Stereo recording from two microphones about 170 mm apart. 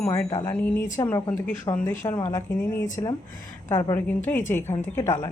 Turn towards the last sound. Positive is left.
turn(degrees=15)  # may be behind; listen again after turning